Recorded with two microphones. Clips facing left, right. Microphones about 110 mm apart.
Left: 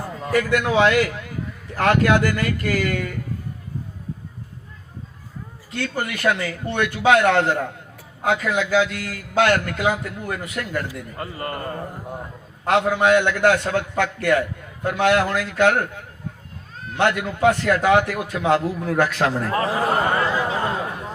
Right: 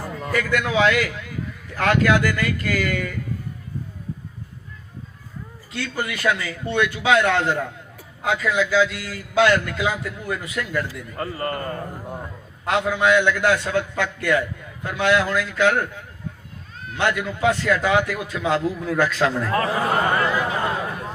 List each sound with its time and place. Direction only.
0.3 s a man's voice: 40° left (ahead or behind)
5.7 s a man's voice: 45° left (ahead or behind)
11.2 s a man's voice: 15° left (ahead or behind)
12.6 s a man's voice: 50° left (ahead or behind)
19.5 s speech: 25° left (ahead or behind)
20.7 s a sound: 20° left (ahead or behind)